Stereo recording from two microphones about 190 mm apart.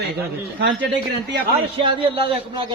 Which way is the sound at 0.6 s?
65° right (ahead or behind).